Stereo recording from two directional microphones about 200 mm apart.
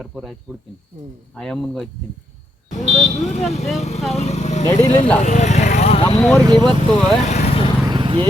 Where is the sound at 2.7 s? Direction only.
35° left (ahead or behind).